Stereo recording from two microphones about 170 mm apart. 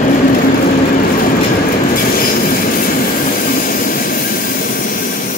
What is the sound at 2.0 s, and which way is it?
Train, 60° left (ahead or behind).